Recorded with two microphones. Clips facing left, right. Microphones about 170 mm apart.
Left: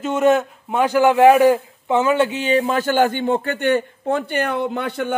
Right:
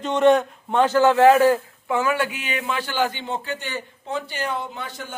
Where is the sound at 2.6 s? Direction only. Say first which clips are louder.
Left 7 dB; 45° left (ahead or behind); by 5.1 s 60° left (ahead or behind).